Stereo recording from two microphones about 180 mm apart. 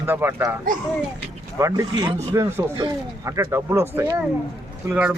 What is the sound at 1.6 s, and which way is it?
A man's voice, 20° right (ahead or behind).